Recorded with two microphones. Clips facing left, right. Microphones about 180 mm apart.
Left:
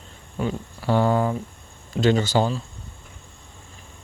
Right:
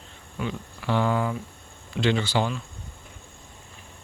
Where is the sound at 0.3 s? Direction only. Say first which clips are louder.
Left 5 dB; 40° left (ahead or behind).